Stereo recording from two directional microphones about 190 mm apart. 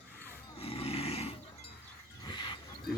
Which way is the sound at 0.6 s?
30° left (ahead or behind).